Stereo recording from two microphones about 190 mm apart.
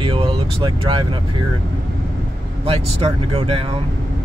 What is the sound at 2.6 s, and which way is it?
Speech, 30° right (ahead or behind).